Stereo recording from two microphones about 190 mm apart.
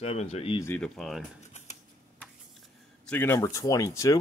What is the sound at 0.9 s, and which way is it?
Speech, centre (ahead or behind).